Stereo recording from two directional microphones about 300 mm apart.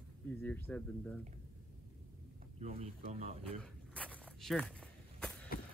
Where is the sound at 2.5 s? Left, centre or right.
Right.